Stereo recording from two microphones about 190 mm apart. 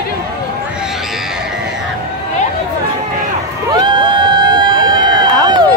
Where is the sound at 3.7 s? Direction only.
25° right (ahead or behind).